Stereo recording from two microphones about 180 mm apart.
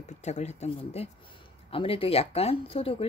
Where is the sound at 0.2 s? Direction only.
40° left (ahead or behind).